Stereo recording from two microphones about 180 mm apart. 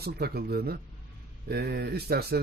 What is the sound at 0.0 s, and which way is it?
A man's voice, 60° right (ahead or behind).